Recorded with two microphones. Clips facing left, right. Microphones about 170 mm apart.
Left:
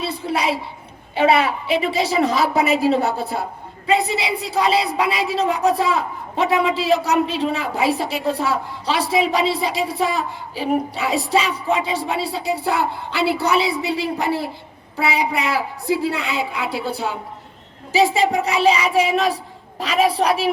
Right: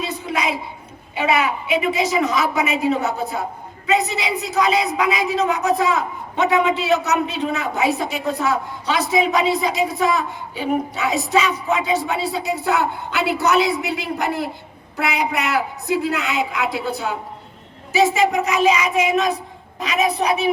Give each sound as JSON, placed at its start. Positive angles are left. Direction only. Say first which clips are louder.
{"t": 0.1, "sound": "child singing", "louder": "left 2 dB", "side_deg": 30}
{"t": 1.1, "sound": "a woman's voice", "louder": "left 3 dB", "side_deg": 30}